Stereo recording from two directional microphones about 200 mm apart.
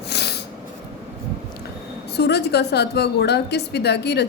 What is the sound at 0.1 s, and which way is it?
Snort, 55° left (ahead or behind).